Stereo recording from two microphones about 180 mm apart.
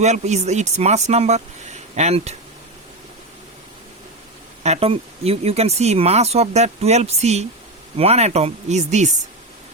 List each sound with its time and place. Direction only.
0.0 s speech: 40° right (ahead or behind)
4.6 s speech: 35° right (ahead or behind)